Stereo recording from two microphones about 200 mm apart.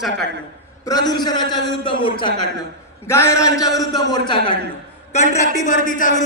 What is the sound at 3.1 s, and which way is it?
A man's voice, 15° left (ahead or behind).